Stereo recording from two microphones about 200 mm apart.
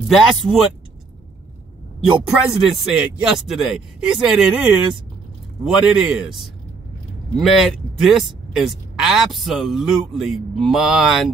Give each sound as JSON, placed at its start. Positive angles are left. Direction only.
{"t": 0.1, "sound": "speech", "side_deg": 0}
{"t": 2.2, "sound": "speech", "side_deg": 0}